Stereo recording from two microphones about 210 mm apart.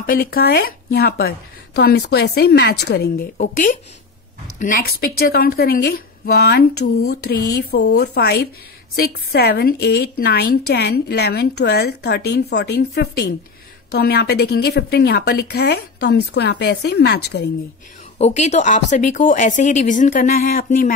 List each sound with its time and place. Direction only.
0.0 s a woman's voice: 45° left (ahead or behind)
3.3 s a woman's voice: 40° left (ahead or behind)
18.1 s speech: 35° left (ahead or behind)